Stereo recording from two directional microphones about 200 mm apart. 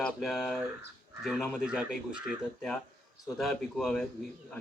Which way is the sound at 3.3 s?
Centre (ahead or behind).